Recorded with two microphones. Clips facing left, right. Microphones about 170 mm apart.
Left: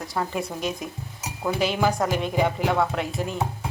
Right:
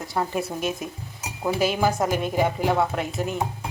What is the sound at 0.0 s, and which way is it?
Speech, centre (ahead or behind).